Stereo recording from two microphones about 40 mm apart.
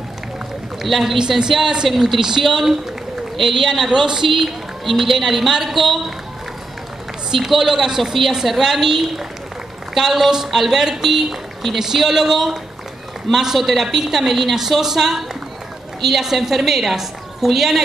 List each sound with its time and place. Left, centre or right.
0.8 s a man's voice: centre
1.6 s speech: centre
1.9 s a woman's voice: centre
4.3 s a man's voice: centre
7.3 s a man's voice: centre